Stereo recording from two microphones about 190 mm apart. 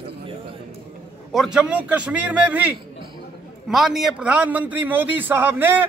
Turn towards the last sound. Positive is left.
turn(degrees=-10)  # may be behind; listen again after turning